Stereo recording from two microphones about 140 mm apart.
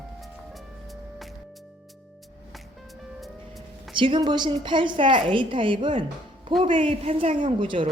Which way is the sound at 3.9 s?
35° right (ahead or behind).